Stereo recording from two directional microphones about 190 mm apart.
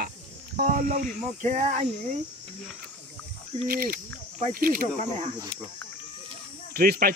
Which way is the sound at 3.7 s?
50° right (ahead or behind).